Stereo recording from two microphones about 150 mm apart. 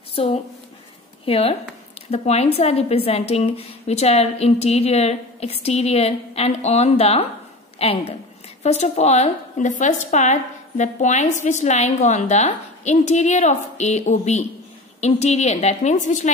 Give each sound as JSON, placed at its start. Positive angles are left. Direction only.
{"t": 0.1, "sound": "a woman's voice", "side_deg": 40}